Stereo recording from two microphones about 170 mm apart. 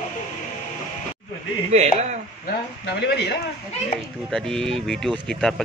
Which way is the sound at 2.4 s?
75° left (ahead or behind).